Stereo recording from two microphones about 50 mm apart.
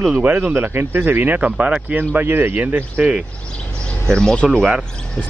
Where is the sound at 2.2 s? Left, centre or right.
Right.